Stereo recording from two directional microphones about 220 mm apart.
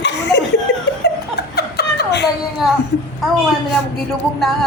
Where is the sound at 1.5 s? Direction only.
45° left (ahead or behind).